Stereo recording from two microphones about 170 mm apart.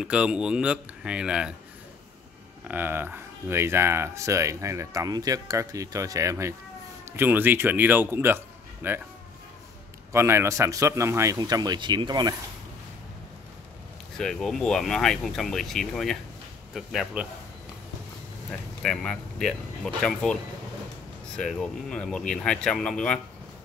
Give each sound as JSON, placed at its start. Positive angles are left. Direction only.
{"t": 0.0, "sound": "speech", "side_deg": -5}
{"t": 2.7, "sound": "speech", "side_deg": -10}
{"t": 10.1, "sound": "speech", "side_deg": -15}
{"t": 14.1, "sound": "speech", "side_deg": 0}
{"t": 18.8, "sound": "speech", "side_deg": 5}
{"t": 21.4, "sound": "speech", "side_deg": 5}